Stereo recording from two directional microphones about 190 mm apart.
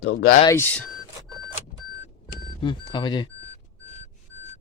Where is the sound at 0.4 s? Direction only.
10° left (ahead or behind).